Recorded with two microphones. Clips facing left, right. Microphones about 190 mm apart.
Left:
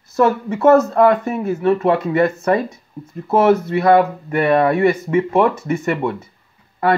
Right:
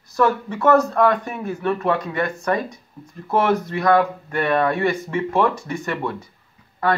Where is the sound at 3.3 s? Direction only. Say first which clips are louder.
Left 6 dB; 25° left (ahead or behind).